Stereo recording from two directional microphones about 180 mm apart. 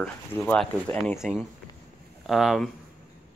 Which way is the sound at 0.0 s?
5° left (ahead or behind).